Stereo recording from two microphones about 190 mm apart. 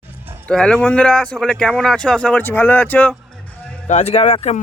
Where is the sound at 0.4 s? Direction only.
5° left (ahead or behind).